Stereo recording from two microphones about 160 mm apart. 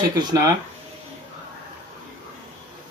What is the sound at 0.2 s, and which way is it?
Speech, 25° right (ahead or behind).